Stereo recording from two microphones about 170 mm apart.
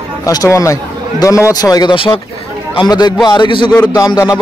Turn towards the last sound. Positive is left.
turn(degrees=20)  # may be behind; listen again after turning